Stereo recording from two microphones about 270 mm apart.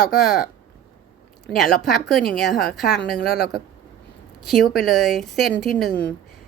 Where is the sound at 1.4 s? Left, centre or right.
Centre.